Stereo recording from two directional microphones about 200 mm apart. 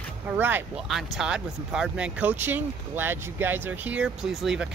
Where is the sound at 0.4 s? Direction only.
10° right (ahead or behind).